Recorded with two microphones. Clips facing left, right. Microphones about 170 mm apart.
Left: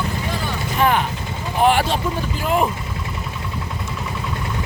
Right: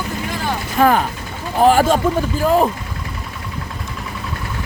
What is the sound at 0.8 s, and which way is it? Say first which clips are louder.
Speech: right 4 dB; 40° right (ahead or behind).